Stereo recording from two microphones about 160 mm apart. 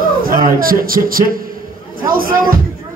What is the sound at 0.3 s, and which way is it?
Speech, 65° right (ahead or behind).